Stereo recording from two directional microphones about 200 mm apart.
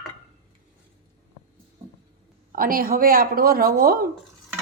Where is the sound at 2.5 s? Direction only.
45° right (ahead or behind).